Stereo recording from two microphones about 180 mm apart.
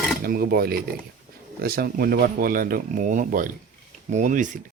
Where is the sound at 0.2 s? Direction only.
55° right (ahead or behind).